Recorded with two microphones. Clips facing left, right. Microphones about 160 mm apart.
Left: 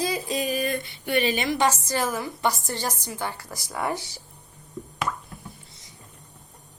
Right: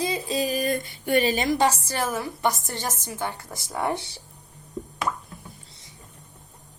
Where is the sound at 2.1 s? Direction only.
20° right (ahead or behind).